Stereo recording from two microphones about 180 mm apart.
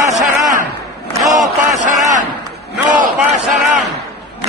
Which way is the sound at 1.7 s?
40° right (ahead or behind).